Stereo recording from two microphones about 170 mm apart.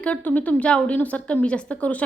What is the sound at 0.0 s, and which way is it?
A woman's voice, 10° left (ahead or behind).